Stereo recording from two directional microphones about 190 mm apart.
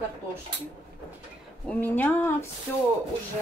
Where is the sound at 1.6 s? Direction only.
10° left (ahead or behind).